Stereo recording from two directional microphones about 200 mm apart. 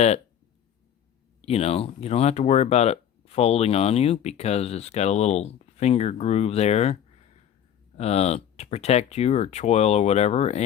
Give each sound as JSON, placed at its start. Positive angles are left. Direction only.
{"t": 1.4, "sound": "speech", "side_deg": 30}